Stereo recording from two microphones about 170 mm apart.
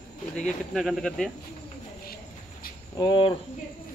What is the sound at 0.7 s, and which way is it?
Speech, centre (ahead or behind).